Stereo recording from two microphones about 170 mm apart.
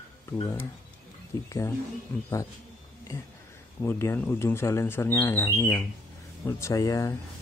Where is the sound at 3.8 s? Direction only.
15° left (ahead or behind).